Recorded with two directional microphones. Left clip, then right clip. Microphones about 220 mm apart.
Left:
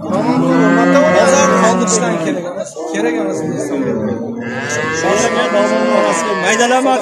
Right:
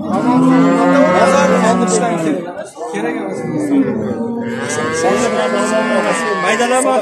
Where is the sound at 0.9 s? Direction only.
40° left (ahead or behind).